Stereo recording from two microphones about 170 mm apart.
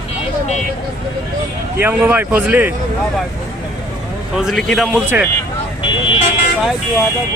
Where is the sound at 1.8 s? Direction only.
10° right (ahead or behind).